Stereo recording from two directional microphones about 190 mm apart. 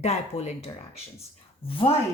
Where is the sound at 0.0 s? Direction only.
35° left (ahead or behind).